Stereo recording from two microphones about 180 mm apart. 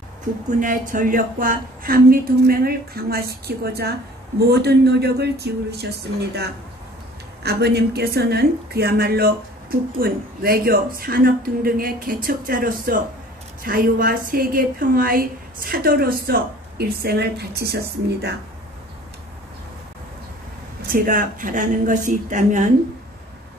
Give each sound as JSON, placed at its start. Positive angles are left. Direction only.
{"t": 0.6, "sound": "a woman's voice", "side_deg": -50}
{"t": 20.9, "sound": "a woman's voice", "side_deg": -50}